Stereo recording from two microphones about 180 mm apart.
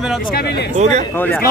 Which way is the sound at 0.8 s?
40° right (ahead or behind).